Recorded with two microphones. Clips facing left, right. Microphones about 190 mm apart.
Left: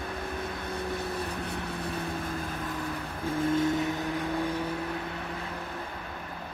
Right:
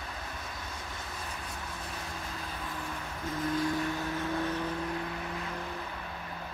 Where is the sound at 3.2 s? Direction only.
30° left (ahead or behind).